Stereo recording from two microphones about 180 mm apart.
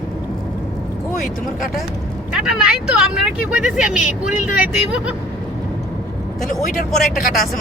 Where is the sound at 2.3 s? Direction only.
5° right (ahead or behind).